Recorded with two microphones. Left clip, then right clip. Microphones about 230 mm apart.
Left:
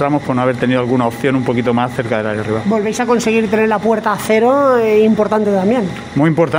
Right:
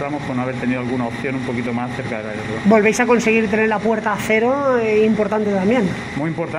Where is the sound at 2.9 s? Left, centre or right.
Left.